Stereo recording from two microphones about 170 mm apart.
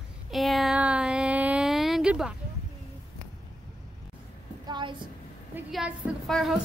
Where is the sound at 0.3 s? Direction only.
Centre (ahead or behind).